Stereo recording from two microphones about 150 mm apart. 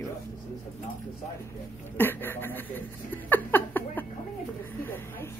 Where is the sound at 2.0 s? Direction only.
15° left (ahead or behind).